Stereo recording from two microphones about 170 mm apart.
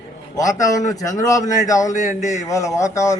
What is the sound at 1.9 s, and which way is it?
Speech, 45° left (ahead or behind).